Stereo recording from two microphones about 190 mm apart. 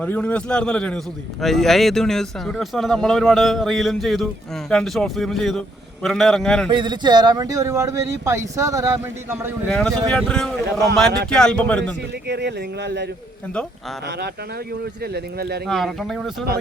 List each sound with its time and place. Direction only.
0.0 s a man's voice: 10° left (ahead or behind)
6.7 s speech: 25° right (ahead or behind)
9.6 s a man's voice: 5° left (ahead or behind)
12.3 s a man's voice: 60° right (ahead or behind)
15.0 s a man's voice: 55° right (ahead or behind)
15.6 s a man's voice: centre (ahead or behind)